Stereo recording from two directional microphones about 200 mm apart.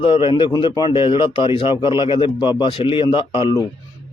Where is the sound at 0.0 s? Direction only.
25° left (ahead or behind).